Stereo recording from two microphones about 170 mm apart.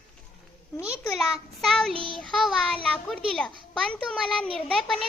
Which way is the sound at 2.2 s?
Centre (ahead or behind).